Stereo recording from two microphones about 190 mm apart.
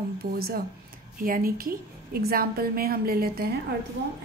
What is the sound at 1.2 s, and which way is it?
A woman's voice, 50° right (ahead or behind).